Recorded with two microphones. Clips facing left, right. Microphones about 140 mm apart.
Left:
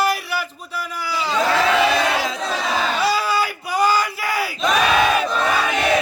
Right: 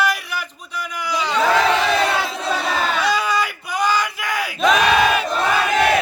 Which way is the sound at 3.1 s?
5° left (ahead or behind).